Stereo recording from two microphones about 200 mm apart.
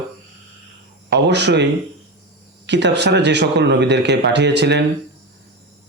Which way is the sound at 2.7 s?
60° right (ahead or behind).